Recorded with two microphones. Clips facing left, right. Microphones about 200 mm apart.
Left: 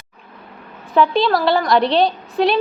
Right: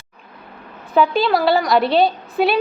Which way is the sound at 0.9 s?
Centre (ahead or behind).